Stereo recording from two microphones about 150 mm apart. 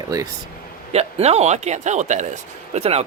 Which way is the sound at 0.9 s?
45° right (ahead or behind).